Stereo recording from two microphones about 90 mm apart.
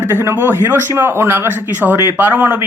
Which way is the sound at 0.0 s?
25° right (ahead or behind).